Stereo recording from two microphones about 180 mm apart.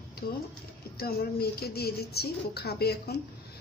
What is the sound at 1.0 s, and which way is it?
A woman's voice, 60° left (ahead or behind).